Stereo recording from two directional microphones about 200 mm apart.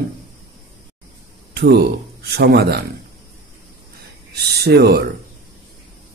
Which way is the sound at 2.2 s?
55° right (ahead or behind).